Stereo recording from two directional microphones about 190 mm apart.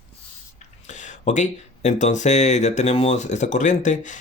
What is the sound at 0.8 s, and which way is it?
Speech, 40° left (ahead or behind).